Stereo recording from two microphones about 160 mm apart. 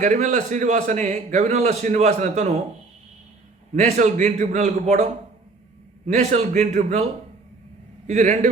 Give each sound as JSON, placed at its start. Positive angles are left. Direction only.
{"t": 0.0, "sound": "a man's voice", "side_deg": -50}
{"t": 3.8, "sound": "a man's voice", "side_deg": -45}